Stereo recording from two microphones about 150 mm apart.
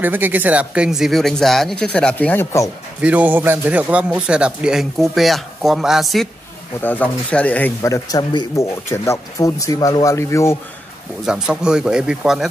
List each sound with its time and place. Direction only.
0.0 s a man's voice: 10° right (ahead or behind); by 2.7 s 15° left (ahead or behind)
3.0 s a man's voice: 10° right (ahead or behind)
6.8 s speech: 10° left (ahead or behind)
11.2 s a man's voice: 5° right (ahead or behind)